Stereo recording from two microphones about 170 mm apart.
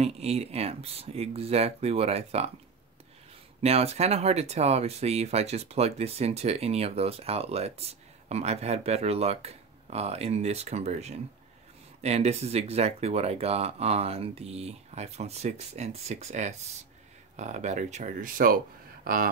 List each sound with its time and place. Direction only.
0.0 s speech: 40° right (ahead or behind)
3.6 s speech: 40° right (ahead or behind); by 18.6 s 55° right (ahead or behind)